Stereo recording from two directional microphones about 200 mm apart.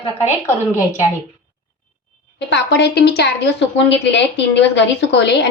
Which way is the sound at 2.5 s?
60° left (ahead or behind).